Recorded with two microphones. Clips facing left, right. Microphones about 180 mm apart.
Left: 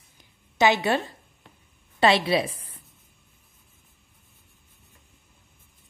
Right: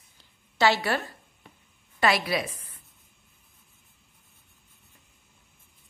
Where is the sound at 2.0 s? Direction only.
25° left (ahead or behind).